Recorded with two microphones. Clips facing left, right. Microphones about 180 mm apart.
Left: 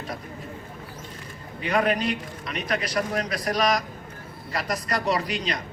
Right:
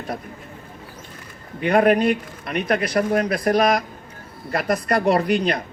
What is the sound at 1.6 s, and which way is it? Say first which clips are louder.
Speech: right 7 dB; 55° right (ahead or behind).